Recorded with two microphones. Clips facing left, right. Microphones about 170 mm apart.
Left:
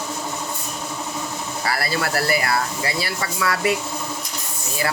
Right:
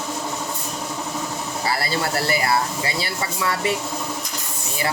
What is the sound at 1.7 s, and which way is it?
Speech, 25° right (ahead or behind).